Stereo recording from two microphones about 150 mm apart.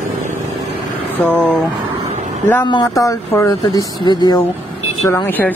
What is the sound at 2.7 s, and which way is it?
Speech, 25° left (ahead or behind).